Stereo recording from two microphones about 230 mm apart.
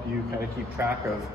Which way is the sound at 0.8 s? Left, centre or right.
Centre.